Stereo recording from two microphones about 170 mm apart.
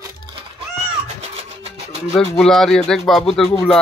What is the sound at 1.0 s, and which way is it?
Music, 40° right (ahead or behind).